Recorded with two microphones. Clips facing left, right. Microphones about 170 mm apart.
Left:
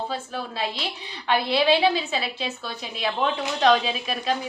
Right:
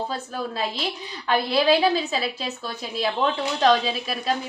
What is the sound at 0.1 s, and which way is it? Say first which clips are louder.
A woman's voice: right 1 dB; 40° right (ahead or behind).